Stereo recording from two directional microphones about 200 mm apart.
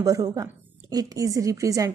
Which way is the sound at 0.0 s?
20° right (ahead or behind).